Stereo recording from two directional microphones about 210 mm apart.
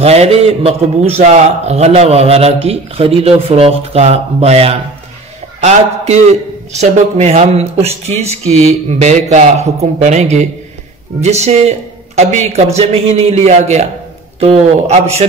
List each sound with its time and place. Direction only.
0.0 s a man's voice: 30° right (ahead or behind)